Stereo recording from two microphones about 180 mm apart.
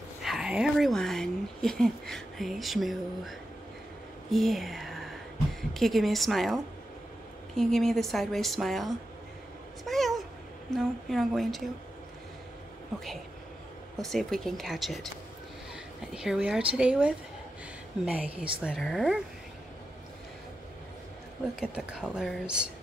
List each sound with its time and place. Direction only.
0.2 s a woman's voice: centre (ahead or behind)
9.8 s a sound: centre (ahead or behind)
10.7 s a woman's voice: centre (ahead or behind)
13.9 s a woman's voice: centre (ahead or behind)
21.5 s a woman's voice: 5° right (ahead or behind)